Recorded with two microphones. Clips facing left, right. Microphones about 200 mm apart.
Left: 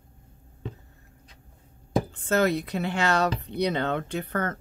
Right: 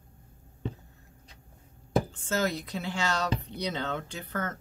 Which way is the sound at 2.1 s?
60° left (ahead or behind).